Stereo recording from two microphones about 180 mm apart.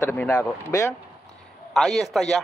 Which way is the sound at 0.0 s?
10° left (ahead or behind).